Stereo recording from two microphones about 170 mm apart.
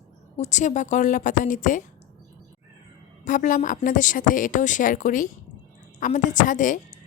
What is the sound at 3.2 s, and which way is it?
A woman's voice, 50° left (ahead or behind).